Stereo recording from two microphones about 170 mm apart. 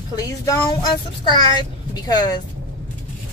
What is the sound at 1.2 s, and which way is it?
Speech, 25° left (ahead or behind).